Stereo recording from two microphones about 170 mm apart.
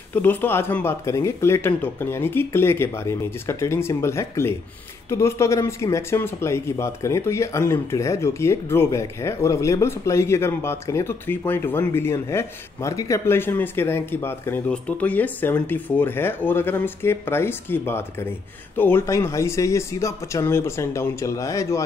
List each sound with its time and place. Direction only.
0.1 s speech: 10° left (ahead or behind)